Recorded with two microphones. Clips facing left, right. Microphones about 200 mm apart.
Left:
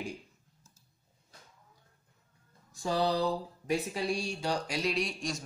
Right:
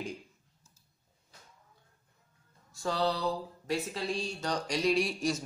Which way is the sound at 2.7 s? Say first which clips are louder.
Left 1 dB; 15° left (ahead or behind).